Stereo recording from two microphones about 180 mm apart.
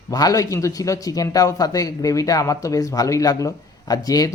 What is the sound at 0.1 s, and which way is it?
A man's voice, 20° left (ahead or behind).